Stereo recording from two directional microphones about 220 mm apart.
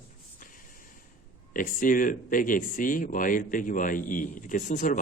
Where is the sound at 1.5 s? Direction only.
35° left (ahead or behind).